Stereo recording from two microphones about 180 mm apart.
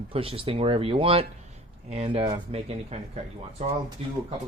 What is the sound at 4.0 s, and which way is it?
Speech, 35° right (ahead or behind).